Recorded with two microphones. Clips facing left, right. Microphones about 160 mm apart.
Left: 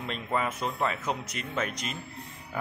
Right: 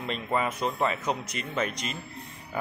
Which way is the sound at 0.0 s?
Centre (ahead or behind).